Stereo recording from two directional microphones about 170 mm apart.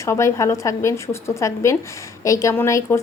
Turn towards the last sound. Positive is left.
turn(degrees=15)  # may be behind; listen again after turning